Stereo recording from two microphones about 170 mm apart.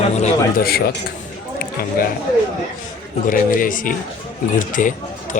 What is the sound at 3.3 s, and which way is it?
Speech, 55° left (ahead or behind).